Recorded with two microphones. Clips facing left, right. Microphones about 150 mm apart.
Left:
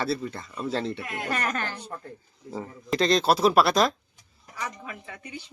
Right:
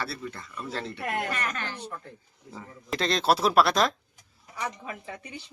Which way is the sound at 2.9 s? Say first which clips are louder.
Left 3 dB; centre (ahead or behind).